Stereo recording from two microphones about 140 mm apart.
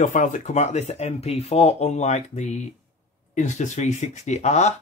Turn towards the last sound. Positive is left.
turn(degrees=55)  # may be behind; listen again after turning